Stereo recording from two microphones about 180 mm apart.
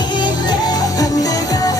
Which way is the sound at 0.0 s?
25° left (ahead or behind).